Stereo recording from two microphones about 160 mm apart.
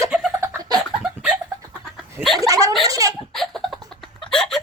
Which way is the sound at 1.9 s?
Centre (ahead or behind).